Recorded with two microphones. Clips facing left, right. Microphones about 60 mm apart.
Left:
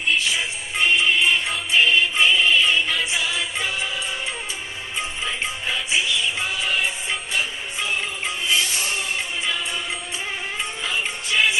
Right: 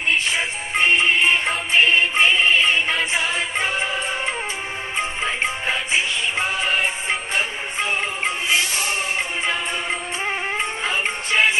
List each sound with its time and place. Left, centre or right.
0.1 s music: right